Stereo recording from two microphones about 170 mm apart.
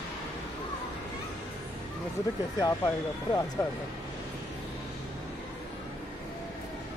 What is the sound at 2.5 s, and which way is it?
Speech, 20° left (ahead or behind).